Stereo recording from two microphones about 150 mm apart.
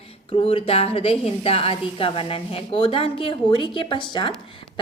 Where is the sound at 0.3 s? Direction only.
40° left (ahead or behind).